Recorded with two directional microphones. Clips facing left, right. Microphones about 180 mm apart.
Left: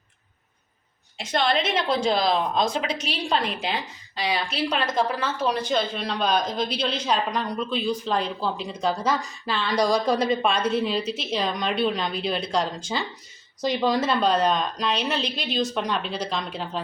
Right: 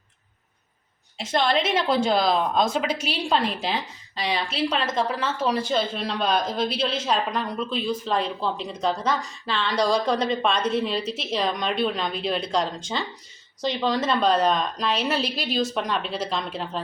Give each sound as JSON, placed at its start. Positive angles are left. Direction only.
{"t": 1.2, "sound": "a woman's voice", "side_deg": 0}